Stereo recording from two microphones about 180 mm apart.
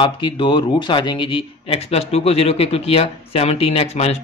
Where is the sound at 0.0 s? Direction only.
25° left (ahead or behind).